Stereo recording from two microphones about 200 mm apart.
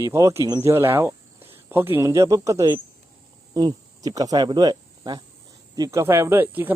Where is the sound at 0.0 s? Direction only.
15° right (ahead or behind).